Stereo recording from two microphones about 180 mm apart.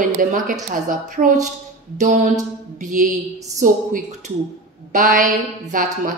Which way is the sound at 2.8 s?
45° right (ahead or behind).